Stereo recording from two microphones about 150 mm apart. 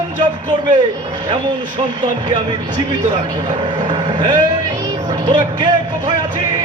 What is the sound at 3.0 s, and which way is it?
Speech, 55° right (ahead or behind).